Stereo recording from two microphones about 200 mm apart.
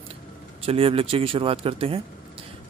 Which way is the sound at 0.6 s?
30° right (ahead or behind).